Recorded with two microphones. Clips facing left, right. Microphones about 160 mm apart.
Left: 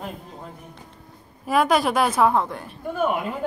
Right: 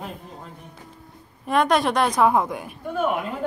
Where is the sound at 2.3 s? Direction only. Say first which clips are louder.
Right 1 dB; 10° right (ahead or behind).